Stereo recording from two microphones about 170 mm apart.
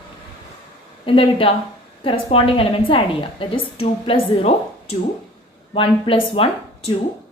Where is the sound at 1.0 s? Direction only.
35° left (ahead or behind).